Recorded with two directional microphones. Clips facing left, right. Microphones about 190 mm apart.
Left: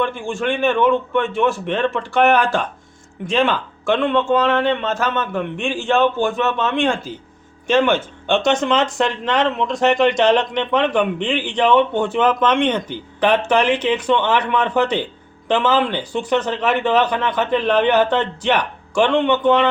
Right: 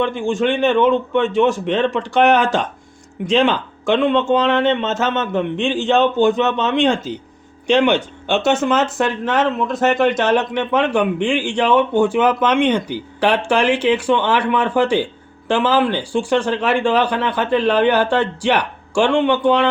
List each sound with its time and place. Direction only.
0.0 s speech: 20° right (ahead or behind)